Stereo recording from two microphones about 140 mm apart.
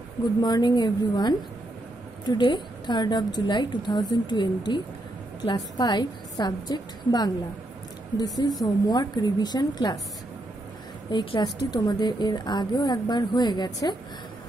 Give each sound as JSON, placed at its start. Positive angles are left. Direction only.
{"t": 0.4, "sound": "a woman's voice", "side_deg": 30}
{"t": 11.1, "sound": "a woman's voice", "side_deg": 30}